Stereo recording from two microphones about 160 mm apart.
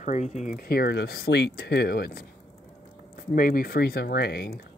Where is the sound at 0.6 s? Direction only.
80° left.